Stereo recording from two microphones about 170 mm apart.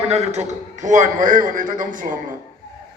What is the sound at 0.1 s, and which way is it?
A man's voice, 40° right (ahead or behind).